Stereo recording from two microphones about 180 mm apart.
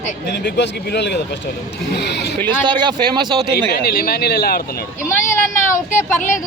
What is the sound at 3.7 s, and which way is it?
Speech, 60° left (ahead or behind).